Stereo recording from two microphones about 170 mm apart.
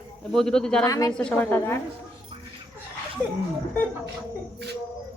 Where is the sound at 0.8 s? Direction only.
20° left (ahead or behind).